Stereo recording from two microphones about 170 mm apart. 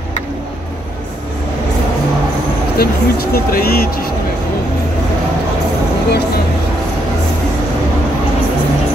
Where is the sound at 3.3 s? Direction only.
65° left (ahead or behind).